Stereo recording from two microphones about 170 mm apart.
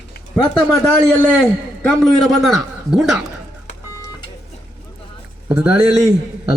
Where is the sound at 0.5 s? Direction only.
5° left (ahead or behind).